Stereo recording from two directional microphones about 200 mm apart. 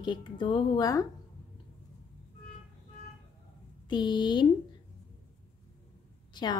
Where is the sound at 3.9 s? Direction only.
20° left (ahead or behind).